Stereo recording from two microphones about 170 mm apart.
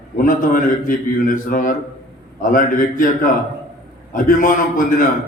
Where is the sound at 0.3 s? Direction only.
50° left (ahead or behind).